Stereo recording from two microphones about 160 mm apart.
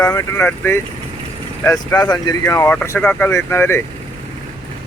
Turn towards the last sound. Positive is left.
turn(degrees=15)  # may be behind; listen again after turning